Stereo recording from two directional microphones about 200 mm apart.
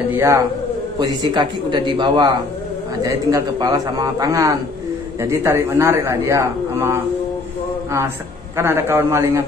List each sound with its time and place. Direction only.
0.2 s a man's voice: 15° right (ahead or behind)
8.5 s speech: 10° right (ahead or behind)